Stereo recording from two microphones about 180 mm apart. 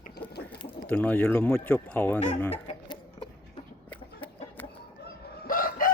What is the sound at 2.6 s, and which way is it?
Chicken, 25° left (ahead or behind).